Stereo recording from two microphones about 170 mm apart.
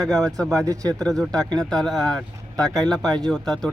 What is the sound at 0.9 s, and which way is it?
Speech, 5° left (ahead or behind).